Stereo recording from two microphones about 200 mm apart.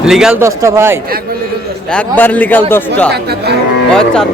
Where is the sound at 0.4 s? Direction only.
15° right (ahead or behind).